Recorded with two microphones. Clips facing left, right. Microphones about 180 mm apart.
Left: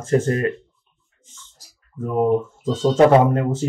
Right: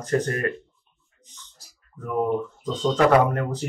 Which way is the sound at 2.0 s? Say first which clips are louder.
Left 5 dB; 25° left (ahead or behind).